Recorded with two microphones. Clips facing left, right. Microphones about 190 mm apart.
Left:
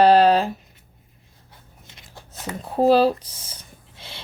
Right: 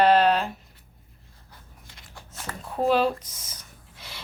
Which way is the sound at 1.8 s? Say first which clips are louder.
Left 3 dB; 20° left (ahead or behind).